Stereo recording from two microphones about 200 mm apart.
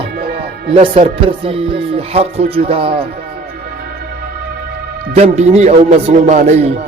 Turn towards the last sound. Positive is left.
turn(degrees=-35)  # may be behind; listen again after turning